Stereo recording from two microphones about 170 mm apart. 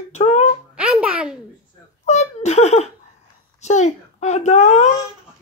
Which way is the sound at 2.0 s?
40° left (ahead or behind).